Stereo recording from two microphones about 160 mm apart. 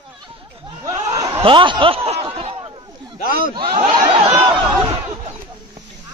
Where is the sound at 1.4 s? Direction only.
30° right (ahead or behind).